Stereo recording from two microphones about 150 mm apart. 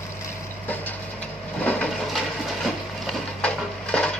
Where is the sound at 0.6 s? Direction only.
10° left (ahead or behind).